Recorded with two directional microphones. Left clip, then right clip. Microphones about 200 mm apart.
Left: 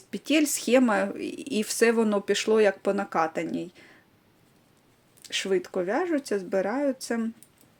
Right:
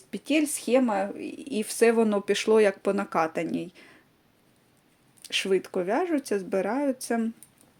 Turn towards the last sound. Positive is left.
turn(degrees=0)  # may be behind; listen again after turning